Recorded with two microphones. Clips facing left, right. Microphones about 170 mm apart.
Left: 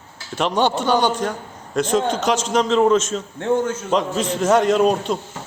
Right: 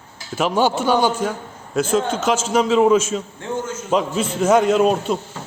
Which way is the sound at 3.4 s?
60° left (ahead or behind).